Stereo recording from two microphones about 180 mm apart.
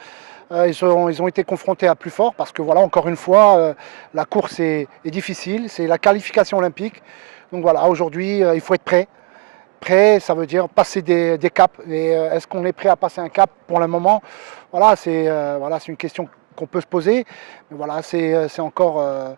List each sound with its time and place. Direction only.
0.6 s speech: 15° right (ahead or behind)
2.1 s speech: 30° right (ahead or behind); by 3.5 s 15° right (ahead or behind)
3.5 s speech: 25° right (ahead or behind)
12.6 s speech: 15° right (ahead or behind)
15.0 s speech: 15° right (ahead or behind)
17.0 s speech: 10° right (ahead or behind)
17.7 s speech: 25° right (ahead or behind)
18.1 s speech: 15° right (ahead or behind)